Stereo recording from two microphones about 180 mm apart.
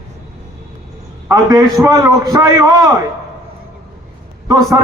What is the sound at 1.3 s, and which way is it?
A man's voice, 20° right (ahead or behind).